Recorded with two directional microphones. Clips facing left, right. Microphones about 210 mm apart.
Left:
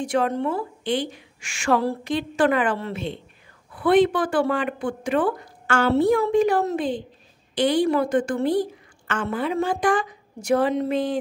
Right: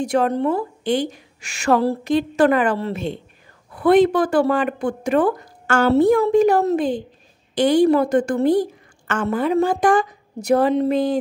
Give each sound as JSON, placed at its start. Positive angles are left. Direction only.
{"t": 0.0, "sound": "a woman's voice", "side_deg": -40}